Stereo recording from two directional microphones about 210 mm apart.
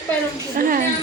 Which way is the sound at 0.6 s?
40° right (ahead or behind).